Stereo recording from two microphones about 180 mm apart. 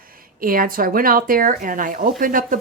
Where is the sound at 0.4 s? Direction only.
50° right (ahead or behind).